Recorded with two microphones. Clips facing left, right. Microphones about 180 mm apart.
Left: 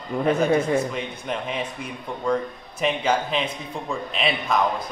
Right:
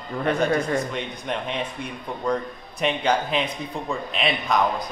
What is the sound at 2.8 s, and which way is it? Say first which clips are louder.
A man's voice: even; centre (ahead or behind).